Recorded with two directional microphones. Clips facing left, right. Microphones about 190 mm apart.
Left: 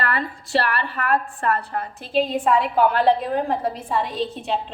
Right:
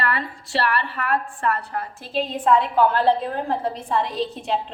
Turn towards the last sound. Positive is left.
turn(degrees=0)  # may be behind; listen again after turning